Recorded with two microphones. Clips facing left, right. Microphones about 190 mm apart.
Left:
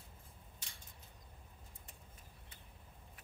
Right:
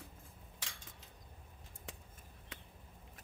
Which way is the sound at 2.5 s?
90° right.